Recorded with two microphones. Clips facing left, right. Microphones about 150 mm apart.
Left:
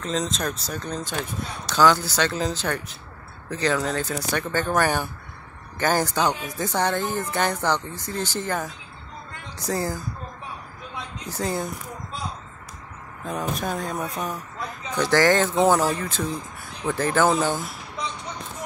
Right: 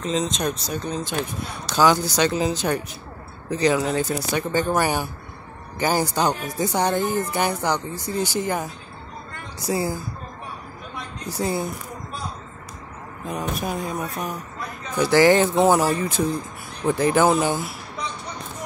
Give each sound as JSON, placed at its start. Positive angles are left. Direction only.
{"t": 0.0, "sound": "speech", "side_deg": -5}
{"t": 11.2, "sound": "speech", "side_deg": -10}
{"t": 13.2, "sound": "speech", "side_deg": -5}